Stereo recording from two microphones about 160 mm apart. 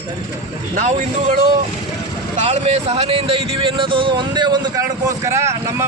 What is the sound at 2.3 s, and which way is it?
Speech, 40° right (ahead or behind).